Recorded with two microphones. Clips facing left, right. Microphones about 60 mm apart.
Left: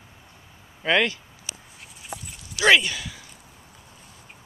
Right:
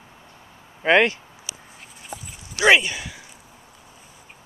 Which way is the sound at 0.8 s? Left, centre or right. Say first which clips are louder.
Right 5 dB; right.